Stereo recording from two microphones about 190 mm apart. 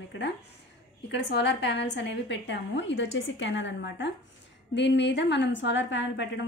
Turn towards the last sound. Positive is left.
turn(degrees=70)  # may be behind; listen again after turning